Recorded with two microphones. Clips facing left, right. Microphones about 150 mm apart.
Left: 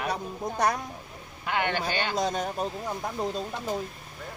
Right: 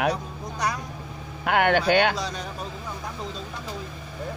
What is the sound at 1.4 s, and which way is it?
Speech, 60° right (ahead or behind).